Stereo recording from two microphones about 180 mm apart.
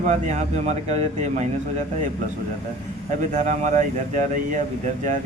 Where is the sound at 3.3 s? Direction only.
45° right (ahead or behind).